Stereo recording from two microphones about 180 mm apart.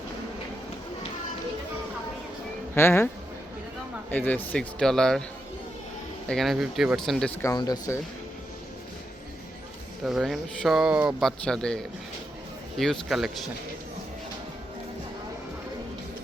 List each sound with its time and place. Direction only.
2.7 s speech: 15° left (ahead or behind)
4.1 s speech: 10° left (ahead or behind)
6.2 s speech: centre (ahead or behind)
7.4 s speech: 20° left (ahead or behind)
10.1 s speech: centre (ahead or behind)